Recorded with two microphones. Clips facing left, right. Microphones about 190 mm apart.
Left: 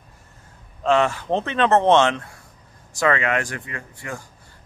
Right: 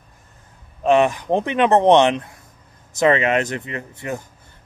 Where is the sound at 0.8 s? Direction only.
15° right (ahead or behind).